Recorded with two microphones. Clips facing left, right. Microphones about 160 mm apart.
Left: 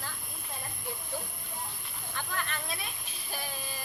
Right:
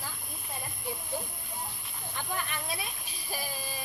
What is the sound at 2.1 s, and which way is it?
Speech, 15° right (ahead or behind).